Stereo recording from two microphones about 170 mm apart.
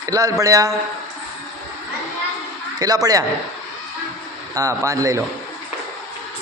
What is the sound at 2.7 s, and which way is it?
Speech, 20° right (ahead or behind).